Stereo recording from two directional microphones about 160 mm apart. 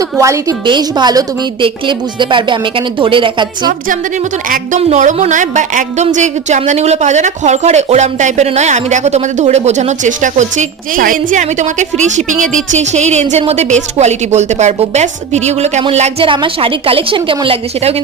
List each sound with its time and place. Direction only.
0.2 s a woman's voice: 20° right (ahead or behind)
4.4 s a woman's voice: 60° right (ahead or behind)
4.8 s a woman's voice: 45° right (ahead or behind)